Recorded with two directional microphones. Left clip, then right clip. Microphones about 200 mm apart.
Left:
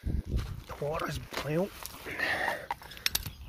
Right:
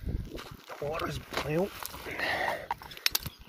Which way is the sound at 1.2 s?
30° right (ahead or behind).